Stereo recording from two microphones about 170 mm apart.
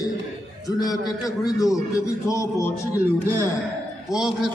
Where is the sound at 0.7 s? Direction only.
20° left (ahead or behind).